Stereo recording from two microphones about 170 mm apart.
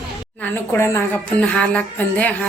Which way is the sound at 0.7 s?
15° left (ahead or behind).